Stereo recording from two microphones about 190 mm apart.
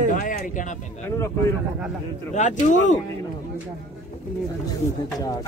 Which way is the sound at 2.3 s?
40° left (ahead or behind).